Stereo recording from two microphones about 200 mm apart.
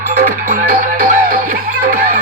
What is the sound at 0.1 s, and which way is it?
Music, 45° right (ahead or behind).